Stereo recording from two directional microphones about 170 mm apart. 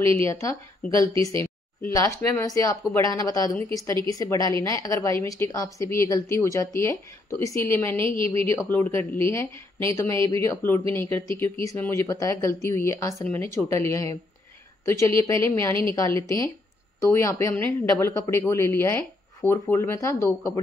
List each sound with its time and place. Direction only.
0.3 s a woman's voice: 20° left (ahead or behind)